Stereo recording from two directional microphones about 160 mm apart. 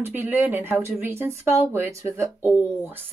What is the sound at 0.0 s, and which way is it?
Speech, 10° right (ahead or behind).